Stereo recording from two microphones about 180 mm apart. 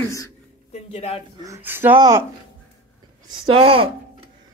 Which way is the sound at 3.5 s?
30° right (ahead or behind).